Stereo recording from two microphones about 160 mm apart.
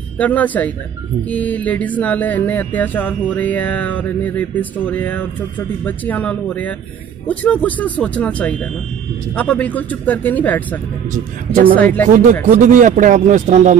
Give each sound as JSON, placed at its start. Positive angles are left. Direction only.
{"t": 0.2, "sound": "music", "side_deg": 10}
{"t": 12.4, "sound": "a man's voice", "side_deg": -50}